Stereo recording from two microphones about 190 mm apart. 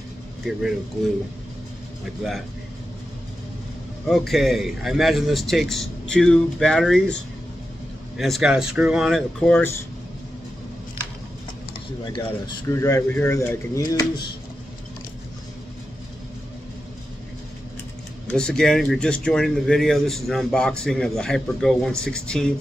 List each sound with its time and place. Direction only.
0.5 s speech: centre (ahead or behind)
4.1 s speech: centre (ahead or behind)
8.2 s speech: centre (ahead or behind)
12.0 s speech: 25° left (ahead or behind)
18.3 s speech: 5° left (ahead or behind)